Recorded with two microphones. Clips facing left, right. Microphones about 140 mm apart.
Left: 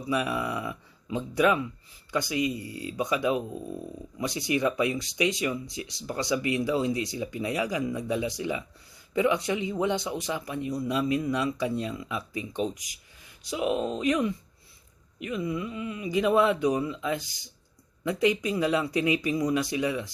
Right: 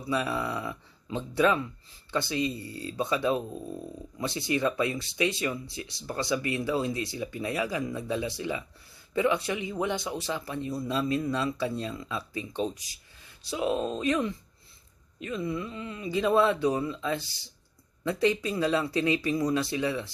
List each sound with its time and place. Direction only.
0.0 s speech: 15° left (ahead or behind)